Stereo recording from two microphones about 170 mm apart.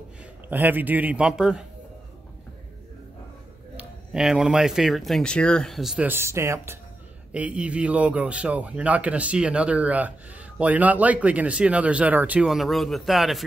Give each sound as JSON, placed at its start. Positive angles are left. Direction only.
{"t": 0.5, "sound": "a man's voice", "side_deg": -10}
{"t": 3.7, "sound": "a man's voice", "side_deg": -5}